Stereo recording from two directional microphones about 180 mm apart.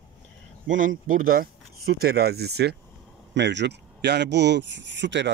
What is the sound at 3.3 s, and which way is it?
Speech, 75° right (ahead or behind).